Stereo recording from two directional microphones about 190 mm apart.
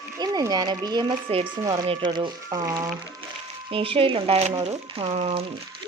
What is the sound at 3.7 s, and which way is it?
A woman's voice, 30° right (ahead or behind).